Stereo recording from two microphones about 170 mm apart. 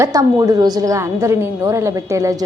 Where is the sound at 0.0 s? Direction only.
20° right (ahead or behind).